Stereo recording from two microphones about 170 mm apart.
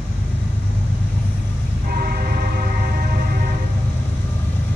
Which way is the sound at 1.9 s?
65° right (ahead or behind).